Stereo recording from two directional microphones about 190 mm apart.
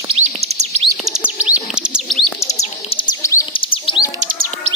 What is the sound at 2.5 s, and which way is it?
Bird, 35° left (ahead or behind).